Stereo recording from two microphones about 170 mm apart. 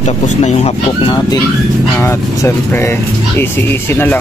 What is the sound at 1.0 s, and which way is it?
Speech, 25° left (ahead or behind).